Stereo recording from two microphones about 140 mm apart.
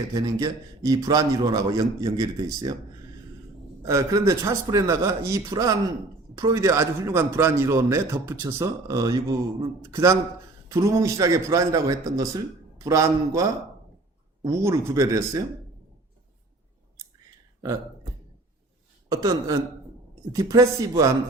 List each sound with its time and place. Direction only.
0.1 s a man's voice: 25° right (ahead or behind)
3.8 s a man's voice: 25° right (ahead or behind)
19.1 s a man's voice: 25° right (ahead or behind)